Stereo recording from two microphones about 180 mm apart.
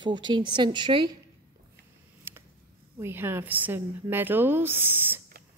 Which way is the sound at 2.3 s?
10° right (ahead or behind).